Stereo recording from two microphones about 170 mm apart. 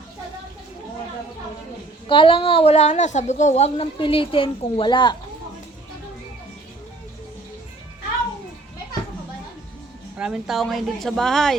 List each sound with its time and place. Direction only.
2.0 s a woman's voice: 30° left (ahead or behind)
10.2 s speech: 5° right (ahead or behind)